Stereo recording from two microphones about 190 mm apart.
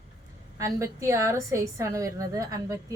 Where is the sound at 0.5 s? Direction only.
15° right (ahead or behind).